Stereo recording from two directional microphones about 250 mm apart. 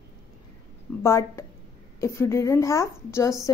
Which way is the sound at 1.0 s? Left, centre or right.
Centre.